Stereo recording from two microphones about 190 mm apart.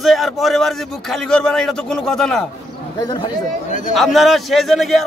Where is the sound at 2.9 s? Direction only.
20° left (ahead or behind).